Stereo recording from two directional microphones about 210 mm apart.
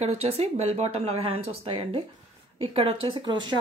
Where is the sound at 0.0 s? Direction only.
30° right (ahead or behind).